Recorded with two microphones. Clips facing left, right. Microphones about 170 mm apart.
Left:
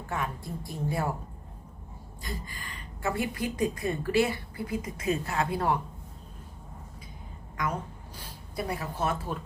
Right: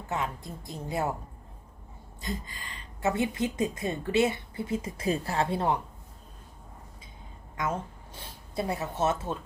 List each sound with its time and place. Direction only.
0.1 s a woman's voice: 20° right (ahead or behind)
2.2 s a woman's voice: 20° right (ahead or behind)
7.5 s speech: 25° right (ahead or behind)